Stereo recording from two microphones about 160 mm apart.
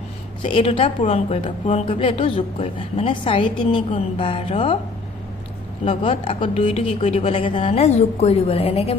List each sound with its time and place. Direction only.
0.4 s a woman's voice: 35° left (ahead or behind)
5.9 s a woman's voice: 35° left (ahead or behind)